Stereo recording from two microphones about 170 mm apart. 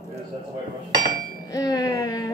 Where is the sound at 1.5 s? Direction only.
20° left (ahead or behind).